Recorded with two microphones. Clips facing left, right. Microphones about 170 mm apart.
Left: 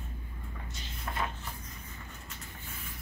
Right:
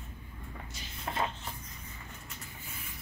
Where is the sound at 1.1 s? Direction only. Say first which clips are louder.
Right 2 dB; 20° right (ahead or behind).